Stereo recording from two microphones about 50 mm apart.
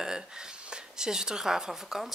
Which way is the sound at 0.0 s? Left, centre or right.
Centre.